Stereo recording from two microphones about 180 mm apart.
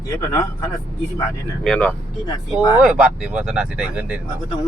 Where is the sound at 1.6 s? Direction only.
5° left (ahead or behind).